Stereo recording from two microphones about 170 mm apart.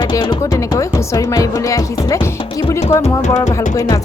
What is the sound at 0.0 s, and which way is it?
Speech, 25° left (ahead or behind).